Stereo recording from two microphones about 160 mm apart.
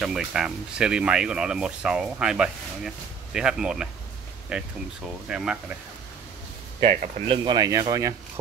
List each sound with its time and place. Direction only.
0.0 s speech: 5° right (ahead or behind)
6.8 s speech: 40° right (ahead or behind)
7.4 s speech: 25° right (ahead or behind)